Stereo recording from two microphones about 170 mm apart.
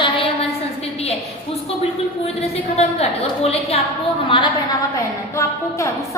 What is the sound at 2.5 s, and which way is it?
A woman's voice, 35° left (ahead or behind).